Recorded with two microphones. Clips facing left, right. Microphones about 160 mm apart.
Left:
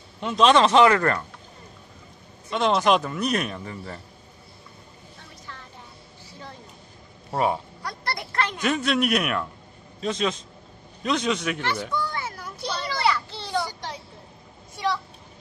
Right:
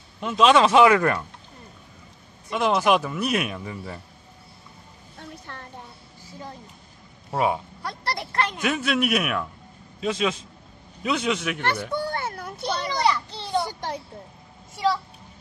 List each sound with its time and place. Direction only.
0.2 s a man's voice: 5° right (ahead or behind)
2.5 s a man's voice: 5° right (ahead or behind)
5.5 s music: 55° right (ahead or behind)
7.2 s speech: centre (ahead or behind)
7.8 s a sound: 30° right (ahead or behind)
8.5 s a man's voice: 5° right (ahead or behind)
11.9 s a sound: 60° right (ahead or behind)
12.9 s children playing: 20° right (ahead or behind)
13.7 s a sound: 50° right (ahead or behind)